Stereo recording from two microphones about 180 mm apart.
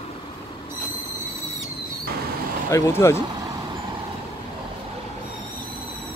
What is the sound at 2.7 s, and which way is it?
Speech, 15° left (ahead or behind).